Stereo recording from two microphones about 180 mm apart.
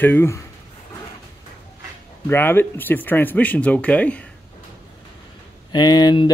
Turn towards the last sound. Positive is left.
turn(degrees=20)  # may be behind; listen again after turning